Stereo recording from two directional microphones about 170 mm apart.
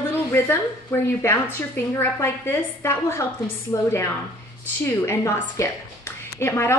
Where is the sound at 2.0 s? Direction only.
15° left (ahead or behind).